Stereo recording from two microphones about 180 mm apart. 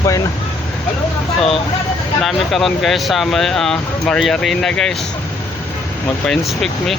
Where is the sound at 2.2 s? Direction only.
Centre (ahead or behind).